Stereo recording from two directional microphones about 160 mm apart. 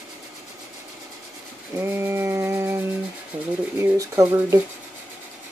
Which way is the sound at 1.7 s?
15° right (ahead or behind).